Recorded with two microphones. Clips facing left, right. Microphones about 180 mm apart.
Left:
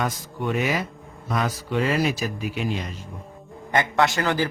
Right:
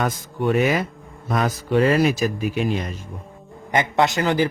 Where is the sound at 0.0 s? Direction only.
55° right (ahead or behind).